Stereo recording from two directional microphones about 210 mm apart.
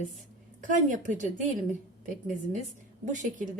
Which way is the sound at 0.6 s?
35° right (ahead or behind).